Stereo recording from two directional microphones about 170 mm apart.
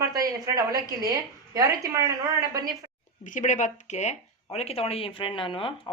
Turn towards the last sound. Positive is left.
turn(degrees=30)  # may be behind; listen again after turning